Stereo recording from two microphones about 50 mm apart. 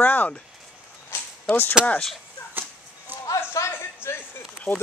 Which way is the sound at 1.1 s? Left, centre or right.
Left.